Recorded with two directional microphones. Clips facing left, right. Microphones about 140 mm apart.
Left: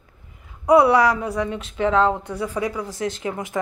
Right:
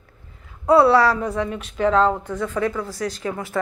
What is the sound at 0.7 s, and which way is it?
Speech, 15° left (ahead or behind).